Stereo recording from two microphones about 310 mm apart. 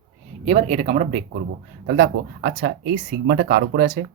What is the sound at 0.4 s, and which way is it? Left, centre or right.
Speech, right.